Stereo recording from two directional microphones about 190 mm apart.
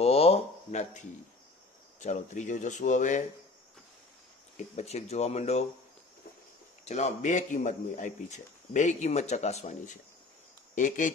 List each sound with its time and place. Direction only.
0.0 s a sound: 30° left (ahead or behind)
2.0 s a man's voice: 40° left (ahead or behind)
4.6 s a man's voice: 35° left (ahead or behind)
6.8 s a man's voice: 35° left (ahead or behind)